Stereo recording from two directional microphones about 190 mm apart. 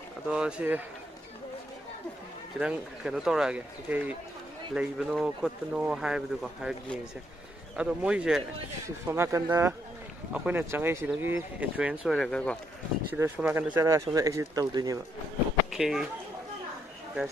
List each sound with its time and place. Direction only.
0.3 s speech: 5° right (ahead or behind)
2.6 s speech: 5° right (ahead or behind)
13.1 s speech: 10° right (ahead or behind)
15.7 s speech: 5° right (ahead or behind)